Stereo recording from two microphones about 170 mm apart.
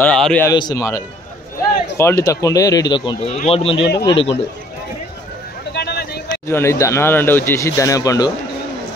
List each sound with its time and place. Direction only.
0.0 s speech: 5° left (ahead or behind)
0.5 s speech: 25° left (ahead or behind)
5.7 s a sound: 70° left (ahead or behind)
6.4 s speech: 15° left (ahead or behind)